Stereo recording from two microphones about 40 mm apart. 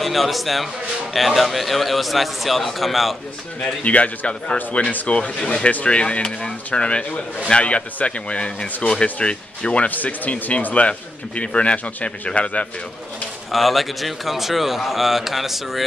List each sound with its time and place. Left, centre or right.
0.0 s a man's voice: centre
3.6 s speech: left
9.8 s speech: left
13.5 s a man's voice: centre